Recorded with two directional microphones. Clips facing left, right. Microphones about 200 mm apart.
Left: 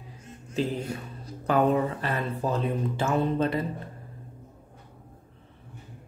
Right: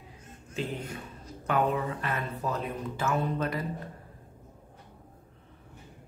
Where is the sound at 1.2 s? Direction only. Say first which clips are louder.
Left 4 dB; 35° left (ahead or behind).